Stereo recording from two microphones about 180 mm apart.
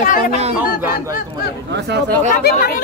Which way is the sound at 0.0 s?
50° left (ahead or behind).